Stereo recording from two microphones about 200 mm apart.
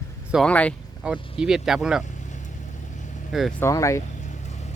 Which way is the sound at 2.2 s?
35° left (ahead or behind).